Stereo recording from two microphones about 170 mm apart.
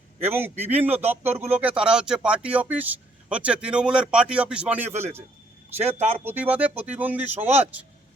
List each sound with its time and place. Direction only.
0.3 s speech: 10° right (ahead or behind)
5.8 s speech: 40° right (ahead or behind)
6.2 s speech: 10° right (ahead or behind)